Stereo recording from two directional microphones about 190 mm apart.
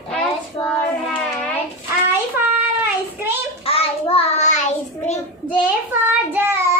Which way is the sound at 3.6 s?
30° left (ahead or behind).